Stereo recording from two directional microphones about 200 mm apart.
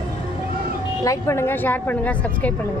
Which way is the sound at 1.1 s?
15° left (ahead or behind).